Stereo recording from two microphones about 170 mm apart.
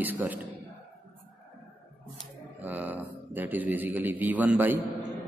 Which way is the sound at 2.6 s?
10° right (ahead or behind).